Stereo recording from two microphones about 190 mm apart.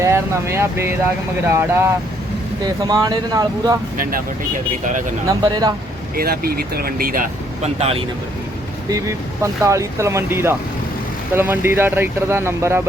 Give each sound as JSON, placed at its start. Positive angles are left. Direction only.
{"t": 0.0, "sound": "speech", "side_deg": -15}
{"t": 3.9, "sound": "speech", "side_deg": -50}
{"t": 5.4, "sound": "speech", "side_deg": -20}
{"t": 6.1, "sound": "speech", "side_deg": -55}
{"t": 8.9, "sound": "speech", "side_deg": -15}